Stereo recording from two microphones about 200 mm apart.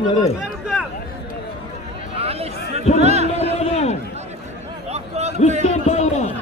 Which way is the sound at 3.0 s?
35° right (ahead or behind).